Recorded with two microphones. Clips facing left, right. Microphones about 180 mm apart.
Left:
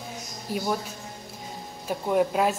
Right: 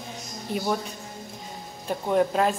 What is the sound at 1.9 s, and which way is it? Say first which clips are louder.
Speech: right 1 dB; 5° left (ahead or behind).